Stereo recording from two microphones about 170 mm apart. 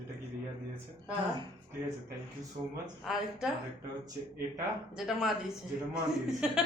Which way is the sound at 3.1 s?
5° right (ahead or behind).